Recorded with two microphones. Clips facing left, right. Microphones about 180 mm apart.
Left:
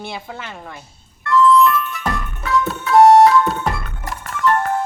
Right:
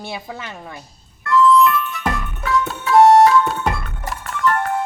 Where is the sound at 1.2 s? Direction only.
Centre (ahead or behind).